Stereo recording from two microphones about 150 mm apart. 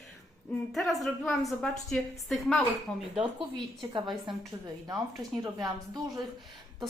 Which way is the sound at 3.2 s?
30° right (ahead or behind).